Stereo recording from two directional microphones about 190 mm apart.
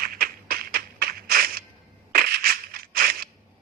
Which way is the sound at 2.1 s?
50° right (ahead or behind).